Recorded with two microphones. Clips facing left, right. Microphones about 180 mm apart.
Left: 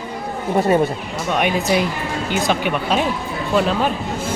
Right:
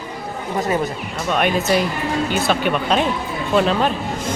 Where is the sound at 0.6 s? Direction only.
30° left (ahead or behind).